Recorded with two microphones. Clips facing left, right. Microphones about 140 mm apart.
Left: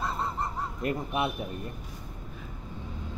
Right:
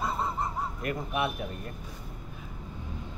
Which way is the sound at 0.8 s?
25° left (ahead or behind).